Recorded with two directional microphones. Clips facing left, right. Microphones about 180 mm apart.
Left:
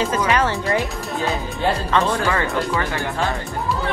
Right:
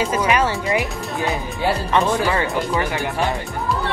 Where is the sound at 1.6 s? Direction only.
15° right (ahead or behind).